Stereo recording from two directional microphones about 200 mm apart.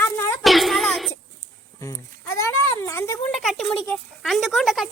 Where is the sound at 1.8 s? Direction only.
15° left (ahead or behind).